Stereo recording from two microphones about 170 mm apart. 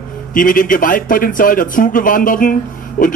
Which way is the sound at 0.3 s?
55° left (ahead or behind).